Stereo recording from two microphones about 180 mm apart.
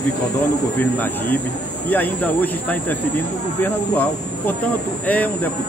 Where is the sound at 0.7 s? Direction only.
10° left (ahead or behind).